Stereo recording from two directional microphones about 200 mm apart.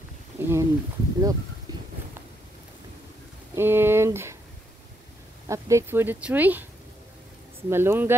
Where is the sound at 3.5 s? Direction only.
10° right (ahead or behind).